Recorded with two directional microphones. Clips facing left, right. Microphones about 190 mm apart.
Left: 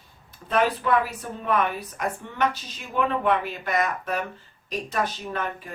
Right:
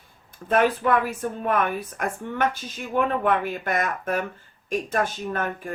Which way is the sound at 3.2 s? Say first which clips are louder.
Right 1 dB; 50° right (ahead or behind).